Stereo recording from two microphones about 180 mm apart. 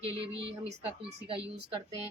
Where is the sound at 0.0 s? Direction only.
30° right (ahead or behind).